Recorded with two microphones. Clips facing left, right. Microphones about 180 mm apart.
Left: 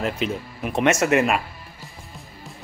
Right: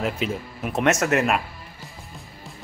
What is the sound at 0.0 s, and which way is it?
Speech, centre (ahead or behind).